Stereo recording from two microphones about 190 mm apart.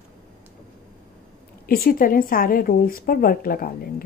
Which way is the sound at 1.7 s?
50° left (ahead or behind).